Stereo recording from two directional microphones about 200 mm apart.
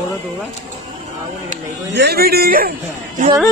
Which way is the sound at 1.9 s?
55° right (ahead or behind).